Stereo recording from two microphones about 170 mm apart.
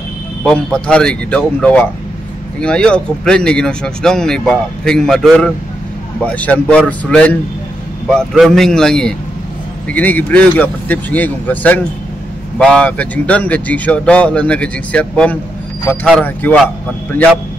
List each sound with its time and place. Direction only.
0.4 s speech: 5° left (ahead or behind)